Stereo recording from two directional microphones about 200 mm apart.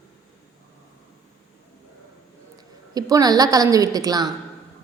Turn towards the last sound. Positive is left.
turn(degrees=-20)  # may be behind; listen again after turning